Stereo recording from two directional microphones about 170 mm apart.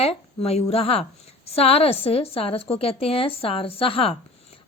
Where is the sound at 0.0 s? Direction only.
35° left (ahead or behind).